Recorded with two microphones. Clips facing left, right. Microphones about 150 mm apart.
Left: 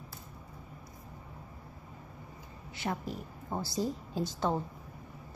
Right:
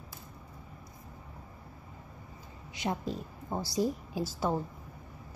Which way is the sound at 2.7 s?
20° right (ahead or behind).